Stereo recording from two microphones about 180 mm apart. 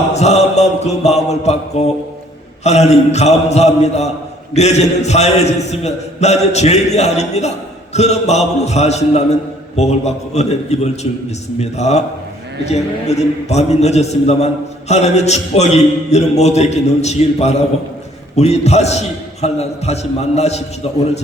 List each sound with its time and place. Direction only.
0.1 s a man's voice: 40° left (ahead or behind)